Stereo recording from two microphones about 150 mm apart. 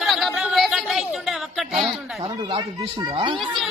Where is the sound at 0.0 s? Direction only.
Centre (ahead or behind).